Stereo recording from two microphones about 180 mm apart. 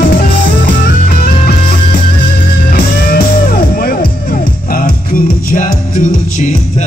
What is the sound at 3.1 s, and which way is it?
Music, 55° left (ahead or behind).